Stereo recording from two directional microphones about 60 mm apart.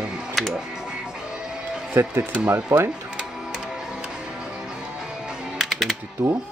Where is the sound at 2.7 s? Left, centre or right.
Right.